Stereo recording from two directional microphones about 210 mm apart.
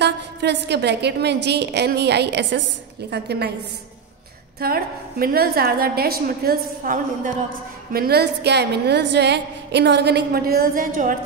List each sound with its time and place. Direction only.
0.0 s a woman's voice: 55° right (ahead or behind)
4.6 s a woman's voice: 45° right (ahead or behind)